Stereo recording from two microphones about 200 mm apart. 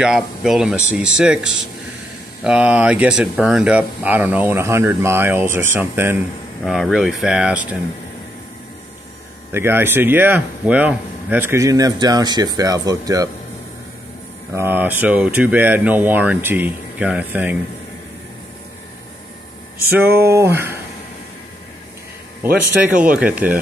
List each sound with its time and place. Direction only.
0.0 s speech: centre (ahead or behind)
9.5 s speech: 10° right (ahead or behind)
14.5 s speech: 10° right (ahead or behind)
20.1 s speech: 10° right (ahead or behind)
22.8 s speech: 5° right (ahead or behind)